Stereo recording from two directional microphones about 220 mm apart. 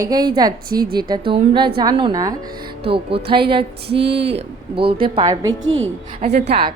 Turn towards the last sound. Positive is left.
turn(degrees=-25)  # may be behind; listen again after turning